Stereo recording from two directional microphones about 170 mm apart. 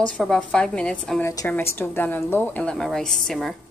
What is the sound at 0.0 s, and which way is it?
A woman's voice, 5° left (ahead or behind).